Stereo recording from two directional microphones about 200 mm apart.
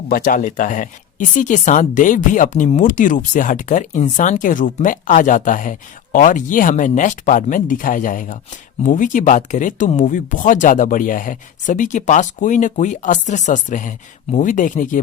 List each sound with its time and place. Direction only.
0.1 s speech: 45° left (ahead or behind)